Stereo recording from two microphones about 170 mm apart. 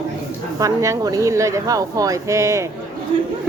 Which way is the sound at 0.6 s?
20° right (ahead or behind).